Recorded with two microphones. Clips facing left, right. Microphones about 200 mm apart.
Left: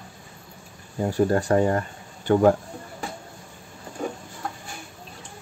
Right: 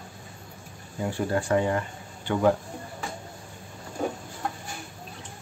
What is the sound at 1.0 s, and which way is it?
Speech, 40° left (ahead or behind).